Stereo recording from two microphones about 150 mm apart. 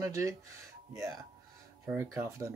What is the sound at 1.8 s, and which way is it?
Speech, 15° right (ahead or behind).